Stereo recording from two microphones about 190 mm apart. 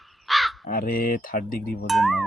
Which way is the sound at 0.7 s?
50° left (ahead or behind).